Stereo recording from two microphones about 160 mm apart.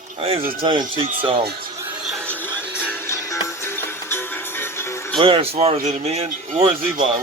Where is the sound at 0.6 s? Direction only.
30° right (ahead or behind).